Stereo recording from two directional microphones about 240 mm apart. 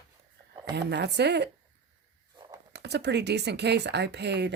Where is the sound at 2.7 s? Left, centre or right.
Right.